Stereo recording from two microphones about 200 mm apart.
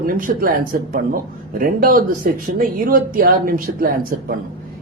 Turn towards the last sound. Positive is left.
turn(degrees=-45)  # may be behind; listen again after turning